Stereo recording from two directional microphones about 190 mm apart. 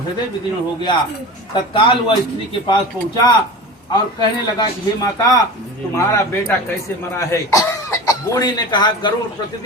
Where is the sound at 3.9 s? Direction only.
20° left (ahead or behind).